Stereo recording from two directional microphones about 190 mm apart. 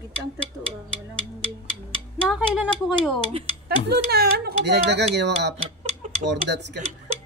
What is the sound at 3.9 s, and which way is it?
Speech, 55° right (ahead or behind).